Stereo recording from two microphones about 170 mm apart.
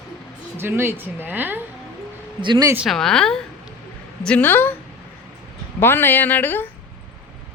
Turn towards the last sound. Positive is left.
turn(degrees=10)  # may be behind; listen again after turning